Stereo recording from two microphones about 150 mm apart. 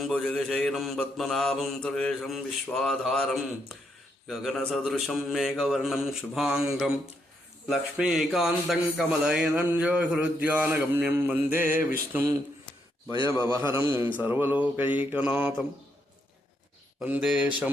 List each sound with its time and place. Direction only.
0.0 s a man's voice: 5° left (ahead or behind)
17.0 s a man's voice: 5° right (ahead or behind)